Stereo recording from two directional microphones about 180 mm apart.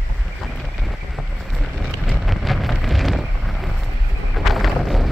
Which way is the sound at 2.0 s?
Centre (ahead or behind).